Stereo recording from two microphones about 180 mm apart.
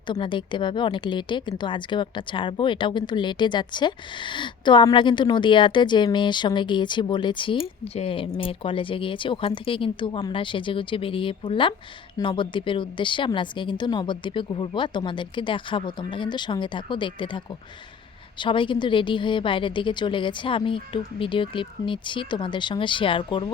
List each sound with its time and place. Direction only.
0.1 s a woman's voice: 25° left (ahead or behind)